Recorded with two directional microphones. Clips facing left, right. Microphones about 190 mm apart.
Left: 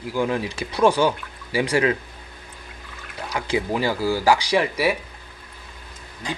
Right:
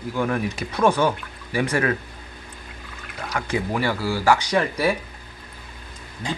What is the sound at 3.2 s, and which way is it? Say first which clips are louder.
Speech: left 1 dB; 15° left (ahead or behind).